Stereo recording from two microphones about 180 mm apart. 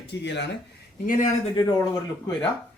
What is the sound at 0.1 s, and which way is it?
Speech, 75° left (ahead or behind).